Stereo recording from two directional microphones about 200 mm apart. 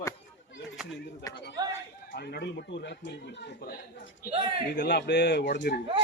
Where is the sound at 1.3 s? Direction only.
60° left (ahead or behind).